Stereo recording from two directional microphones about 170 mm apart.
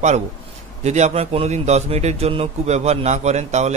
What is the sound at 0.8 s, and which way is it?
A man's voice, 40° right (ahead or behind).